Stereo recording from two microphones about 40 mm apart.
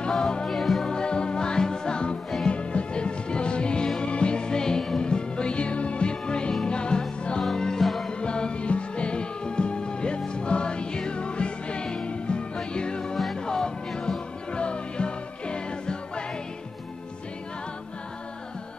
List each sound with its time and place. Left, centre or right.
0.1 s music: centre
0.5 s music: centre
0.8 s music: left
7.8 s music: centre
8.1 s music: left
13.1 s music: centre
13.5 s music: centre